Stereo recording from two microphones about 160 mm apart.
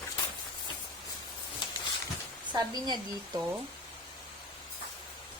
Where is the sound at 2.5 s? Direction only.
25° right (ahead or behind).